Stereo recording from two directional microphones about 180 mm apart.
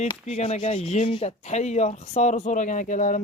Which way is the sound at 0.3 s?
40° left (ahead or behind).